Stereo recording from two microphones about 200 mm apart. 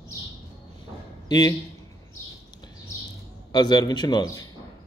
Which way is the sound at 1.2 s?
20° left (ahead or behind).